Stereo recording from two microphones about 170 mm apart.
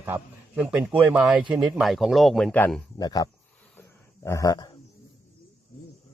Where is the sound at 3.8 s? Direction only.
15° left (ahead or behind).